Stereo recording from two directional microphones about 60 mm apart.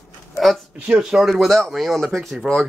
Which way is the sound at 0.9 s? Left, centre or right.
Centre.